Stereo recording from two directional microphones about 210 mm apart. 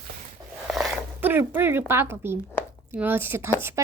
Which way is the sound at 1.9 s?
10° right (ahead or behind).